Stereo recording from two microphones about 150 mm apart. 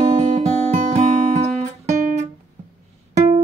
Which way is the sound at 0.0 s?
50° right (ahead or behind).